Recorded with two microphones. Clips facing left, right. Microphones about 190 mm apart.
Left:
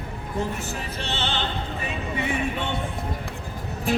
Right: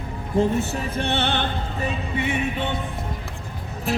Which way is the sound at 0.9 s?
55° right (ahead or behind).